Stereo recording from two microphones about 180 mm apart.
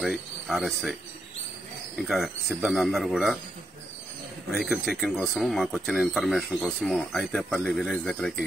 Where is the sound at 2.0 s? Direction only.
Centre (ahead or behind).